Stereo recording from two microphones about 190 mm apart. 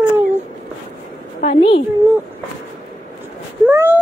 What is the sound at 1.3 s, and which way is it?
Speech, 30° left (ahead or behind).